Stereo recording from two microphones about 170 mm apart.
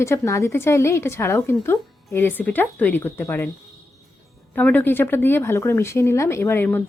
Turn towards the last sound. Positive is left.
turn(degrees=10)  # may be behind; listen again after turning